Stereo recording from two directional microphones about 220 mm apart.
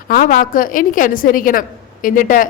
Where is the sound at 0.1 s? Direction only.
40° left (ahead or behind).